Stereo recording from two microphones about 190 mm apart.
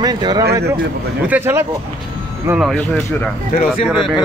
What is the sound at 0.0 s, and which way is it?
Speech, 20° right (ahead or behind).